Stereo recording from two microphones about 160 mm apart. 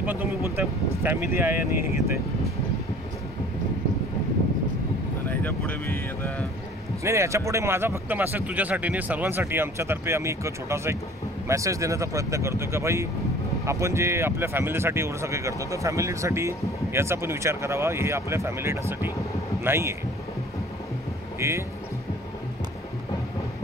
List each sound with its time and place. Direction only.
0.0 s speech: 10° right (ahead or behind)
5.3 s speech: 10° left (ahead or behind)
7.0 s speech: 15° right (ahead or behind)
21.4 s speech: 15° right (ahead or behind)